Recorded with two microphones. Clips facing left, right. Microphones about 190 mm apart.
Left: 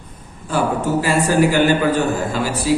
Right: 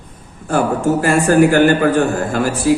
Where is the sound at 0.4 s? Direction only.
50° right (ahead or behind).